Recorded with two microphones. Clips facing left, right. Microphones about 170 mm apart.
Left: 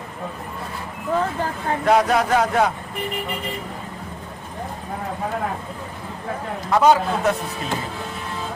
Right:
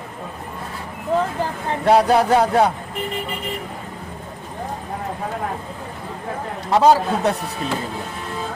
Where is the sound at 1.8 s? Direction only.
30° right (ahead or behind).